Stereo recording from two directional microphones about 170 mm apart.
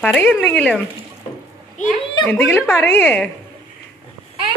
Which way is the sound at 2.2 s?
10° left (ahead or behind).